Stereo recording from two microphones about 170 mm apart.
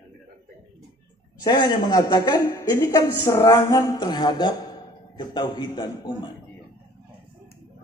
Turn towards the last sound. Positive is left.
turn(degrees=25)  # may be behind; listen again after turning